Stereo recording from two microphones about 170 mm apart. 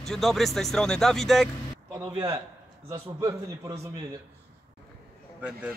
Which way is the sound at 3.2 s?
20° right (ahead or behind).